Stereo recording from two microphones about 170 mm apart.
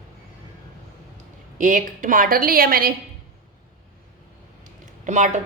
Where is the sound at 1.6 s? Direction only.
50° right (ahead or behind).